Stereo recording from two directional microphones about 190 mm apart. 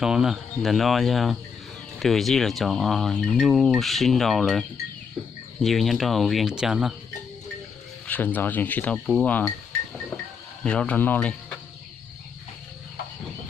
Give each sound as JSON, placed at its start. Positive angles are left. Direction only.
{"t": 0.0, "sound": "speech", "side_deg": -5}
{"t": 5.6, "sound": "speech", "side_deg": 0}
{"t": 8.0, "sound": "speech", "side_deg": 10}
{"t": 10.6, "sound": "speech", "side_deg": 5}